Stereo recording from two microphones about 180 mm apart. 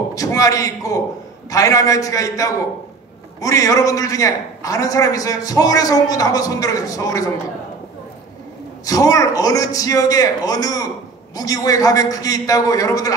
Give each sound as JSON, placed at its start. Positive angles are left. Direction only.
{"t": 0.1, "sound": "a man's voice", "side_deg": 20}
{"t": 8.8, "sound": "a man's voice", "side_deg": 20}